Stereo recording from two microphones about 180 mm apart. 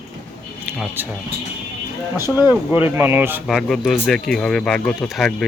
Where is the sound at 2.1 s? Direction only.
15° right (ahead or behind).